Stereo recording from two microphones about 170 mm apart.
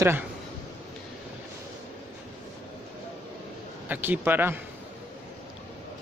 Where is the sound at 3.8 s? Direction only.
10° right (ahead or behind).